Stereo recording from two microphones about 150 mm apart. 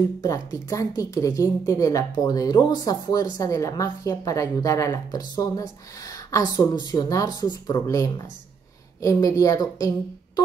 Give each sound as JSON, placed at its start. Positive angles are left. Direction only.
{"t": 0.2, "sound": "a woman's voice", "side_deg": 20}